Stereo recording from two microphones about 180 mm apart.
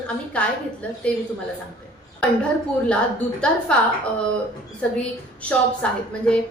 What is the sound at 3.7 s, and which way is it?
A woman's voice, 5° left (ahead or behind).